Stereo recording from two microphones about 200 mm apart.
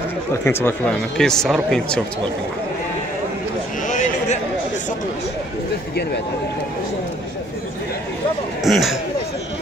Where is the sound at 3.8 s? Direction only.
40° left (ahead or behind).